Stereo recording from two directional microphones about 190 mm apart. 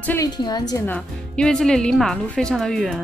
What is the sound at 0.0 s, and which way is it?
Speech, 10° left (ahead or behind).